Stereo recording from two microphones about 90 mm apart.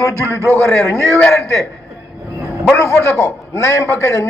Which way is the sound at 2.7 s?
30° left (ahead or behind).